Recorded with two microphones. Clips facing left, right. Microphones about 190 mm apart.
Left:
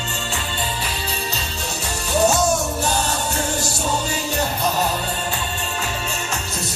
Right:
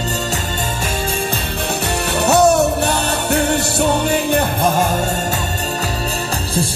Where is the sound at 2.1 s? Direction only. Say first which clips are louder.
Right 5 dB; 65° right (ahead or behind).